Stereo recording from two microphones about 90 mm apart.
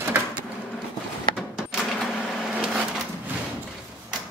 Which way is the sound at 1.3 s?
10° right (ahead or behind).